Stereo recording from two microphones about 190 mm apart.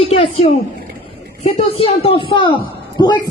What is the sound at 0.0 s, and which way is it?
Speech, 30° left (ahead or behind).